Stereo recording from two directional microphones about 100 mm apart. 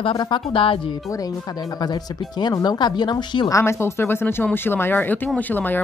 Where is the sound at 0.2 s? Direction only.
55° left (ahead or behind).